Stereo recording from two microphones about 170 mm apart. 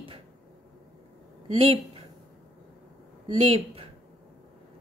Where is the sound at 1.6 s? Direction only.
35° right (ahead or behind).